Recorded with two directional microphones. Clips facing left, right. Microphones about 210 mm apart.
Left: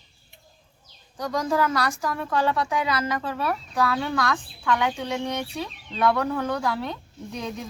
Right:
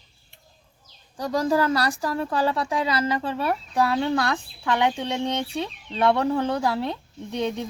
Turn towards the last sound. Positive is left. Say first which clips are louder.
# right 6 dB
turn(degrees=-30)  # may be behind; listen again after turning